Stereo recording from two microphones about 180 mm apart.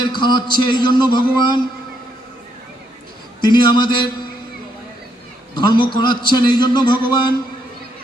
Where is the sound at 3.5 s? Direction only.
25° left (ahead or behind).